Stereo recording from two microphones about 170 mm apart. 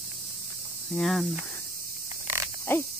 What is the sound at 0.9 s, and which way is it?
Speech, centre (ahead or behind).